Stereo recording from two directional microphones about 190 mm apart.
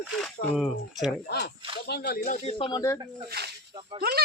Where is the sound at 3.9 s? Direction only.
30° right (ahead or behind).